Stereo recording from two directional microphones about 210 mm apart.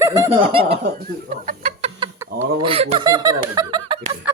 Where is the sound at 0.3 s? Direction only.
30° right (ahead or behind).